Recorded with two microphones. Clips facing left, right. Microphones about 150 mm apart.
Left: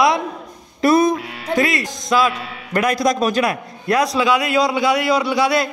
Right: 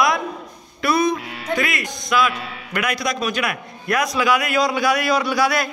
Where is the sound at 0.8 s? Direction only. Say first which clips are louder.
Left 5 dB; 45° left (ahead or behind).